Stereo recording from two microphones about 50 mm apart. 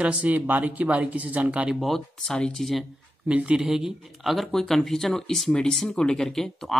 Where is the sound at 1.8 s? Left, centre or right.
Centre.